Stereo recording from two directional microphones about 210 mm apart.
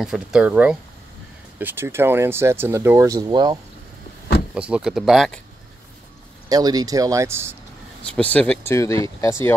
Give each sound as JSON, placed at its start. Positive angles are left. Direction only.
{"t": 0.0, "sound": "speech", "side_deg": 0}
{"t": 4.6, "sound": "speech", "side_deg": -5}
{"t": 6.5, "sound": "speech", "side_deg": -20}
{"t": 8.0, "sound": "speech", "side_deg": 5}